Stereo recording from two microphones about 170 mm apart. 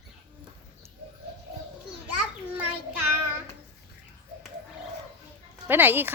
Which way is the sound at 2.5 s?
10° right (ahead or behind).